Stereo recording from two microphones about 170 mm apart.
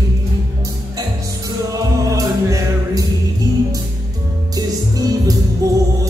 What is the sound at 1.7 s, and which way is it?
Music, 20° right (ahead or behind).